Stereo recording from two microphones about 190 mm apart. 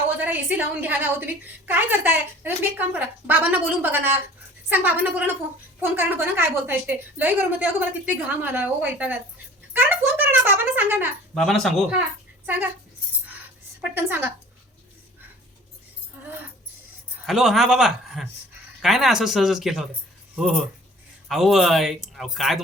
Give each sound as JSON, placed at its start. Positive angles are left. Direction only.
{"t": 0.3, "sound": "a woman's voice", "side_deg": -10}
{"t": 11.3, "sound": "speech", "side_deg": 0}
{"t": 13.9, "sound": "a woman's voice", "side_deg": -10}
{"t": 17.2, "sound": "speech", "side_deg": 0}